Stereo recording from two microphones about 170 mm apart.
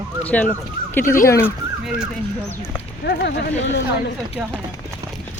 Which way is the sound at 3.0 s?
70° left (ahead or behind).